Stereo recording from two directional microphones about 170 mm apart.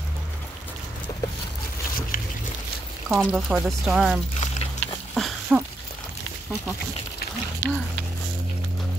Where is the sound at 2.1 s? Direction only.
55° left (ahead or behind).